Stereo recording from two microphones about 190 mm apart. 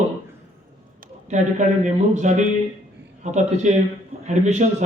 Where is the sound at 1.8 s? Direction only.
40° right (ahead or behind).